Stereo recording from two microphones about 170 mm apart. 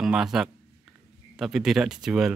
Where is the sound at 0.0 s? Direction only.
5° right (ahead or behind).